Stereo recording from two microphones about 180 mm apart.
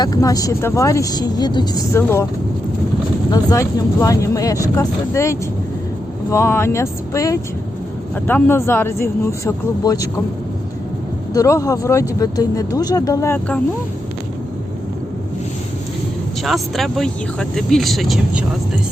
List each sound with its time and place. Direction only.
0.0 s speech: 20° left (ahead or behind)
3.3 s speech: 20° left (ahead or behind)
11.3 s speech: 15° left (ahead or behind)
16.4 s speech: centre (ahead or behind)